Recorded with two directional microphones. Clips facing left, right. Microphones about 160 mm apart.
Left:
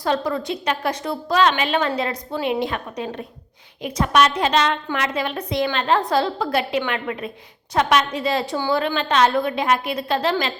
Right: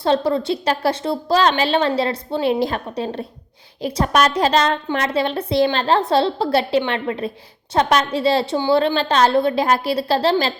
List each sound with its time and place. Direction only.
0.0 s a woman's voice: 30° right (ahead or behind)